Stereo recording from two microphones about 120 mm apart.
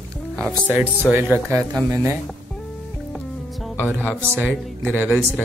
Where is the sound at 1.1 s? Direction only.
15° right (ahead or behind).